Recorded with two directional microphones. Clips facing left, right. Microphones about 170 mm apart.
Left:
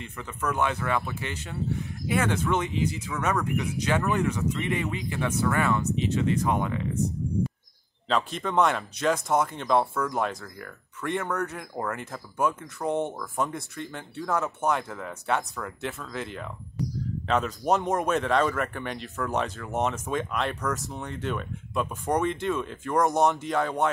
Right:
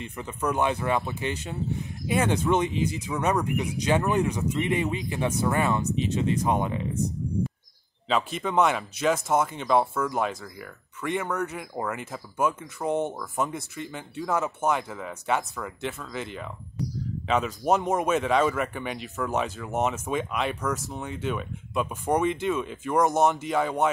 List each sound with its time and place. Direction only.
0.0 s speech: 20° right (ahead or behind)
8.1 s speech: 5° right (ahead or behind)